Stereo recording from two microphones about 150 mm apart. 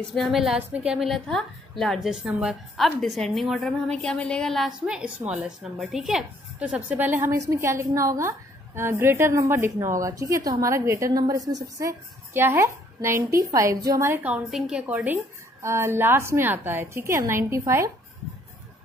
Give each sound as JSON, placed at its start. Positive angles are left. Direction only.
{"t": 0.1, "sound": "a woman's voice", "side_deg": 0}